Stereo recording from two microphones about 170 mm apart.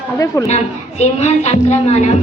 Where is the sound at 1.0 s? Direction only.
40° left (ahead or behind).